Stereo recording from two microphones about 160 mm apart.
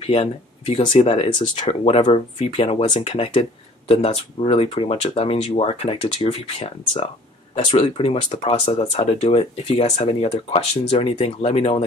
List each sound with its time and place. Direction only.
0.0 s speech: 40° left (ahead or behind)